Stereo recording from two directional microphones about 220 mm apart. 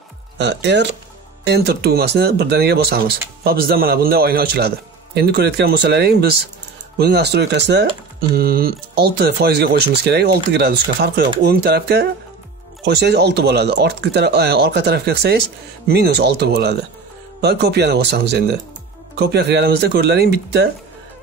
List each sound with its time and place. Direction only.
0.4 s speech: 50° right (ahead or behind)